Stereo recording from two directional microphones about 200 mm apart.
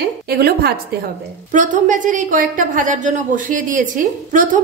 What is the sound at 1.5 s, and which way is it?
A woman's voice, 40° right (ahead or behind).